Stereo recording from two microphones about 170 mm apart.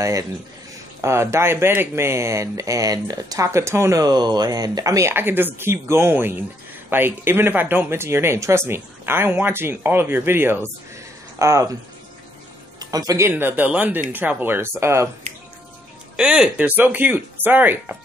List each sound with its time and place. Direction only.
0.0 s speech: 20° right (ahead or behind)
12.7 s speech: 20° right (ahead or behind)
16.2 s speech: 5° right (ahead or behind)